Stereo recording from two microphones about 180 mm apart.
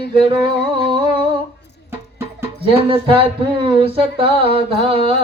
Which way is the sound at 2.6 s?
30° right (ahead or behind).